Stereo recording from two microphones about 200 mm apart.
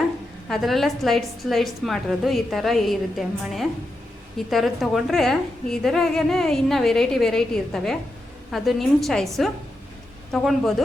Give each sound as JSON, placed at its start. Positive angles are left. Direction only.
{"t": 0.4, "sound": "a woman's voice", "side_deg": 0}